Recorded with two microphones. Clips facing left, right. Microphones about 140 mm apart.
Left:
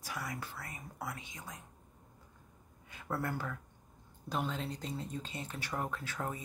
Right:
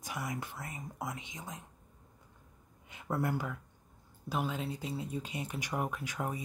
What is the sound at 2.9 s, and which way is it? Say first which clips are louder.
Speech: right 4 dB; 15° right (ahead or behind).